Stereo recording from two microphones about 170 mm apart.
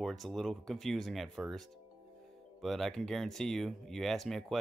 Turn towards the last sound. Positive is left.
turn(degrees=0)  # may be behind; listen again after turning